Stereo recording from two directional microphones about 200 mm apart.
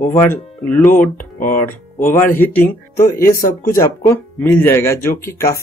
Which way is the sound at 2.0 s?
40° left (ahead or behind).